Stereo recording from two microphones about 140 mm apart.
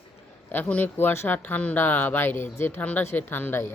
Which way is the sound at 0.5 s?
10° left (ahead or behind).